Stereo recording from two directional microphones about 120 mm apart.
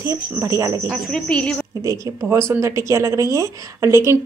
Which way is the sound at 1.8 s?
25° right (ahead or behind).